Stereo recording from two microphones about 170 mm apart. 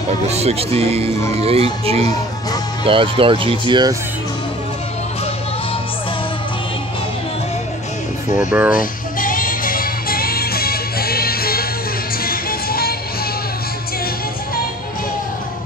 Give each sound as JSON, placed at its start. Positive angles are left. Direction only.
{"t": 0.3, "sound": "speech", "side_deg": -40}
{"t": 8.4, "sound": "speech", "side_deg": -10}
{"t": 8.7, "sound": "music", "side_deg": 55}